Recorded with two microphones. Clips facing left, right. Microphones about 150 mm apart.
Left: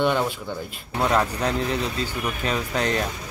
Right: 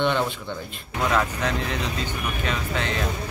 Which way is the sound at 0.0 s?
5° left (ahead or behind).